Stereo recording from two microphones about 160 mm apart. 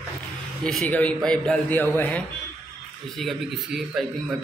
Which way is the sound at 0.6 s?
5° left (ahead or behind).